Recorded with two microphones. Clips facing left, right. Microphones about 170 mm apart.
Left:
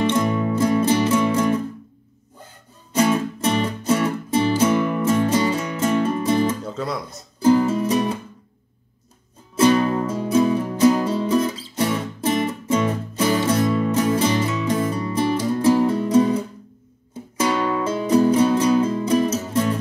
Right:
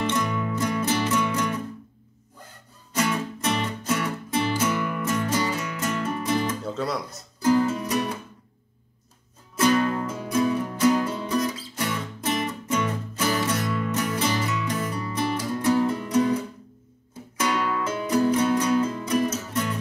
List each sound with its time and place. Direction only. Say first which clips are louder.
0.0 s music: left 6 dB; 25° left (ahead or behind)
2.9 s music: left 7 dB; 25° left (ahead or behind)
6.6 s speech: left 1 dB; centre (ahead or behind)
7.4 s music: left 5 dB; 25° left (ahead or behind)
9.6 s music: left 5 dB; 30° left (ahead or behind)